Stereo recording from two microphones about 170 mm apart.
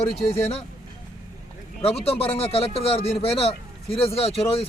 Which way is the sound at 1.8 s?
35° left (ahead or behind).